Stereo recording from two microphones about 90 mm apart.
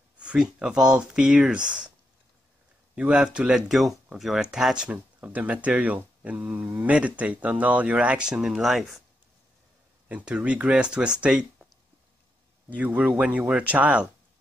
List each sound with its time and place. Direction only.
0.2 s speech: 10° right (ahead or behind)
3.0 s speech: 10° right (ahead or behind)
10.0 s speech: 15° right (ahead or behind)
12.6 s speech: 15° right (ahead or behind)